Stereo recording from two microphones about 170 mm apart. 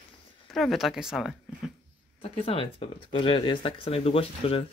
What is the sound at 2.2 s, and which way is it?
Speech, 35° left (ahead or behind).